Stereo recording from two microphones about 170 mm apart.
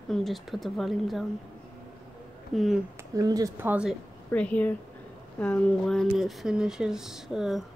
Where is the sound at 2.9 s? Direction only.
20° right (ahead or behind).